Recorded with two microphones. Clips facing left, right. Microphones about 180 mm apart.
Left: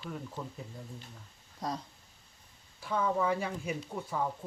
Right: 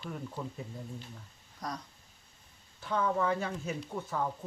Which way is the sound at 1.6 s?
25° left (ahead or behind).